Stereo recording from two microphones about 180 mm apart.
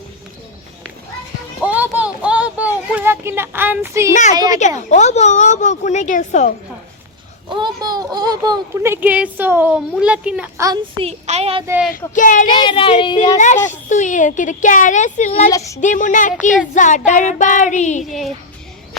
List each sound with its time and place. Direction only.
1.6 s a sound: 10° right (ahead or behind)
4.1 s a woman's voice: 40° left (ahead or behind)
4.4 s a child's voice: 20° right (ahead or behind)
4.9 s a woman's voice: 40° left (ahead or behind)
7.5 s a child's voice: 25° right (ahead or behind); by 10.5 s 5° right (ahead or behind)
10.6 s a child's voice: 20° right (ahead or behind)
11.0 s a child's voice: 35° right (ahead or behind)
11.6 s speech: 10° right (ahead or behind)
11.9 s a woman's voice: 50° left (ahead or behind)
12.5 s speech: 25° left (ahead or behind)
13.3 s a woman's voice: 40° left (ahead or behind)
15.5 s speech: 15° left (ahead or behind)
15.8 s a woman's voice: 45° left (ahead or behind)
18.1 s a child's voice: centre (ahead or behind)